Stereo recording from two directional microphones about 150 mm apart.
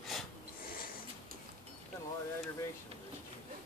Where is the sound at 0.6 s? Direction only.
75° left (ahead or behind).